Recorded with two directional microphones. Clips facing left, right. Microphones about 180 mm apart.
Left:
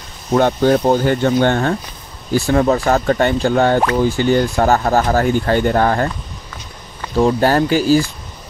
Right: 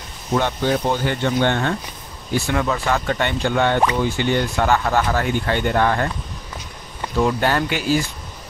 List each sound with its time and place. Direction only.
0.3 s speech: 45° left (ahead or behind)
7.2 s speech: 35° left (ahead or behind)